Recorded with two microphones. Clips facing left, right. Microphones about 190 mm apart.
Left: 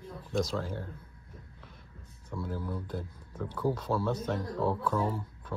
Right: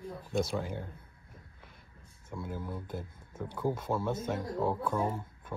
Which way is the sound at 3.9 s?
20° right (ahead or behind).